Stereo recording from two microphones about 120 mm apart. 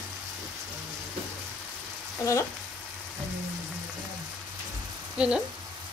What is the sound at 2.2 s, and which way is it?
Frying, 25° left (ahead or behind).